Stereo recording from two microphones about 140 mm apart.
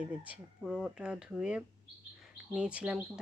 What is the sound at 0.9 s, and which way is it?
Speech, 5° right (ahead or behind).